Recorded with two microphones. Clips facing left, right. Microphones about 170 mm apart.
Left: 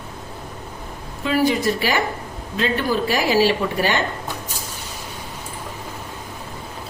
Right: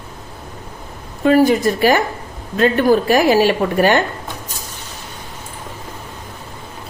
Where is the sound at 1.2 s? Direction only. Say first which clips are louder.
Right 6 dB; 50° right (ahead or behind).